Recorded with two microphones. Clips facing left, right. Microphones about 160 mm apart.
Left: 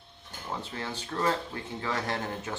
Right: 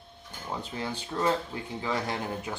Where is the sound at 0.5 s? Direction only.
15° right (ahead or behind).